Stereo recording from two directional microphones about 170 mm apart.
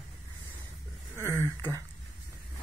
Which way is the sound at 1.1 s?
15° left (ahead or behind).